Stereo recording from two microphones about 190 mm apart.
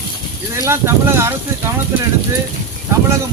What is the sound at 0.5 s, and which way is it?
Speech, 15° right (ahead or behind).